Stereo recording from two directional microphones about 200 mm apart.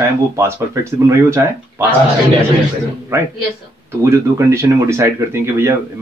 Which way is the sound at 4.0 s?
15° right (ahead or behind).